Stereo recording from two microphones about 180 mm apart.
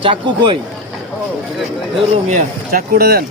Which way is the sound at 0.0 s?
30° right (ahead or behind).